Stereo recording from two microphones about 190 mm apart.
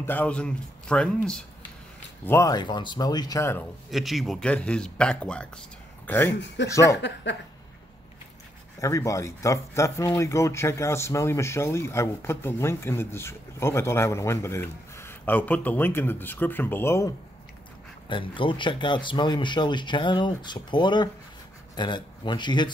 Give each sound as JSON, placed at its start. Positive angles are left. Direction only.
{"t": 0.0, "sound": "speech", "side_deg": 10}
{"t": 2.2, "sound": "speech", "side_deg": 15}
{"t": 3.9, "sound": "speech", "side_deg": 0}
{"t": 6.4, "sound": "speech", "side_deg": 65}
{"t": 8.8, "sound": "speech", "side_deg": 15}
{"t": 18.0, "sound": "speech", "side_deg": 25}